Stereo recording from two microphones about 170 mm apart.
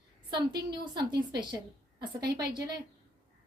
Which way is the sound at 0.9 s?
25° right (ahead or behind).